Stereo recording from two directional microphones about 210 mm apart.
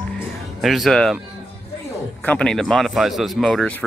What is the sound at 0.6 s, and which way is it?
Speech, centre (ahead or behind).